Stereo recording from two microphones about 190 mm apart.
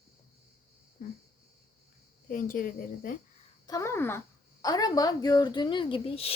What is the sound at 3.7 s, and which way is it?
Speech, 15° left (ahead or behind).